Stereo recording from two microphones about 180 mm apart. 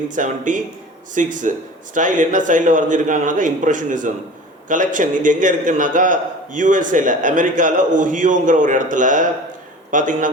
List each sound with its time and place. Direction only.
0.1 s a man's voice: 45° right (ahead or behind)